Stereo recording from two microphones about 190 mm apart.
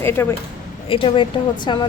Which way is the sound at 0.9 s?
25° left (ahead or behind).